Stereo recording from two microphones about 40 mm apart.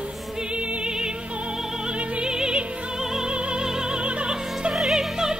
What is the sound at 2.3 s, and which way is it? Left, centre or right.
Music, centre.